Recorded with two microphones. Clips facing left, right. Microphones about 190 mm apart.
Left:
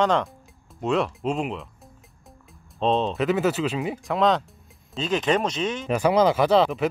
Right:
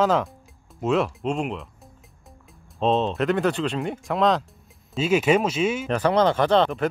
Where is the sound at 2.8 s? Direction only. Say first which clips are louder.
Right 1 dB; centre (ahead or behind).